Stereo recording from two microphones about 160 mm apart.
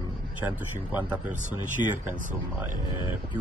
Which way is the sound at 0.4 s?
10° right (ahead or behind).